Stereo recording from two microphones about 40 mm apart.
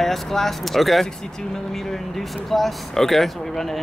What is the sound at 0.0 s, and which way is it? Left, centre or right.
Speech, centre.